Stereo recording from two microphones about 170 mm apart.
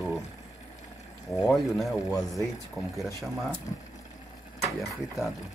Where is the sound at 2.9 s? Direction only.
Centre (ahead or behind).